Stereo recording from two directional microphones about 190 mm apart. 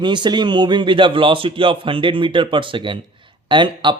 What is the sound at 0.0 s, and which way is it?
A man's voice, 25° right (ahead or behind).